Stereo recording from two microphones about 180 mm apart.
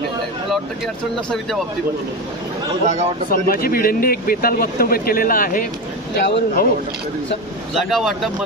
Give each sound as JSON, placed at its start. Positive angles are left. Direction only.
{"t": 3.3, "sound": "speech", "side_deg": 55}
{"t": 7.7, "sound": "speech", "side_deg": 0}